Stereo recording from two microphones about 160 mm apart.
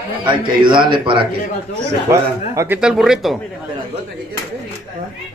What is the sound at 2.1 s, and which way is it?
Speech, 15° right (ahead or behind).